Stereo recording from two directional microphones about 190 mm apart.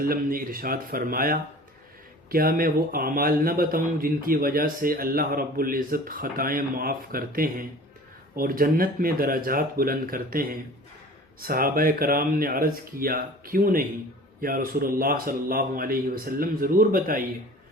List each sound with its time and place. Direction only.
0.0 s a man's voice: 50° right (ahead or behind)